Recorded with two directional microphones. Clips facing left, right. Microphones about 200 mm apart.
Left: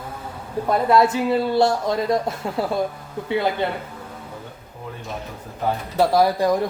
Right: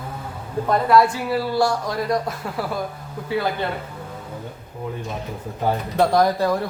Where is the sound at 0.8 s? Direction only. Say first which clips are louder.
Left 1 dB; 25° left (ahead or behind).